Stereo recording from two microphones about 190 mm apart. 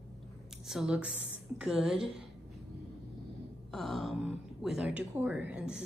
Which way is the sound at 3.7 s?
Centre (ahead or behind).